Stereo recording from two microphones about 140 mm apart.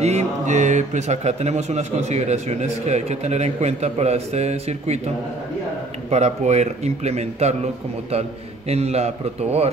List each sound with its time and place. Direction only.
0.0 s speech: 50° right (ahead or behind)
6.0 s speech: 55° right (ahead or behind)